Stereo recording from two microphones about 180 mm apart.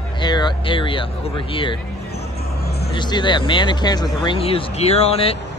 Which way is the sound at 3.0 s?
25° left (ahead or behind).